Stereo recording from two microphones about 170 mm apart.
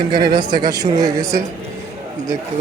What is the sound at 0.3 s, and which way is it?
Speech, 25° right (ahead or behind).